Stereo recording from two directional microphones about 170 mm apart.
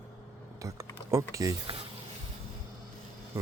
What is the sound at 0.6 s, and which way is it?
Speech, 15° right (ahead or behind).